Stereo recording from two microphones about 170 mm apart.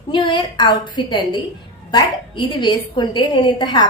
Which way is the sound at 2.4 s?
25° left (ahead or behind).